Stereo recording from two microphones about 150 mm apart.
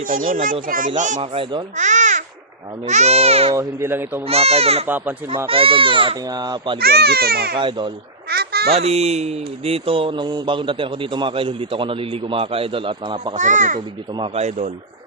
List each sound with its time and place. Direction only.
0.3 s a child's voice: 65° right (ahead or behind)
1.2 s speech: 35° right (ahead or behind)
1.7 s babbling: 55° right (ahead or behind)
2.8 s speech: 50° right (ahead or behind)
3.5 s speech: 20° right (ahead or behind)
4.3 s speech: 45° right (ahead or behind)
4.9 s speech: 15° right (ahead or behind)
5.5 s speech: 35° right (ahead or behind)
6.7 s speech: 90° right
7.6 s speech: 30° right (ahead or behind)
8.3 s a sound: 90° right
8.7 s speech: 45° right (ahead or behind)
13.3 s a child's voice: 55° right (ahead or behind)